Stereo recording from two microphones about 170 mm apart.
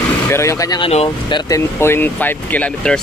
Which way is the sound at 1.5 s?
15° left (ahead or behind).